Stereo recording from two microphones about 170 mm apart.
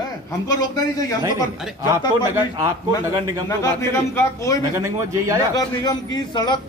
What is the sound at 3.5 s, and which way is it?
A man's voice, 15° left (ahead or behind).